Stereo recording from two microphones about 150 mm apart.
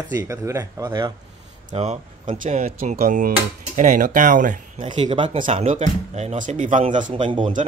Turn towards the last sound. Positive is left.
turn(degrees=-35)  # may be behind; listen again after turning